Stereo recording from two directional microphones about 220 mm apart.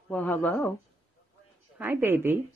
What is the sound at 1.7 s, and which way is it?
Speech, 10° right (ahead or behind).